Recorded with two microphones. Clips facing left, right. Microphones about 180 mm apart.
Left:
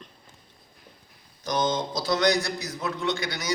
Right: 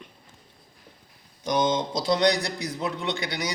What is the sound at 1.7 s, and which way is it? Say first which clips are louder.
Speech: right 2 dB; 30° right (ahead or behind).